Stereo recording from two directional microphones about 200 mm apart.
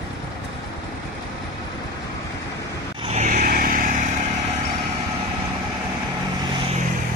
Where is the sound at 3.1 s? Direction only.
35° right (ahead or behind).